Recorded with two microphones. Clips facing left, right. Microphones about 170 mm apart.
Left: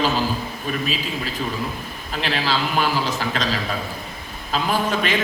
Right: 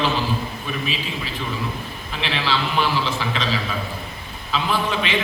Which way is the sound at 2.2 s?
45° left (ahead or behind).